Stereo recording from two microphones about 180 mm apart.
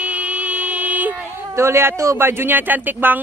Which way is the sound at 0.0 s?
5° right (ahead or behind).